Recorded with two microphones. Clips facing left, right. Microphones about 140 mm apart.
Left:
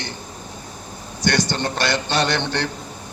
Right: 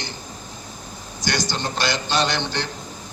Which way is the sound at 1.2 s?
60° left (ahead or behind).